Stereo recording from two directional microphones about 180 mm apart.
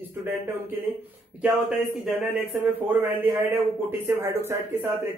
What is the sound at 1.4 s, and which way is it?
Speech, centre (ahead or behind).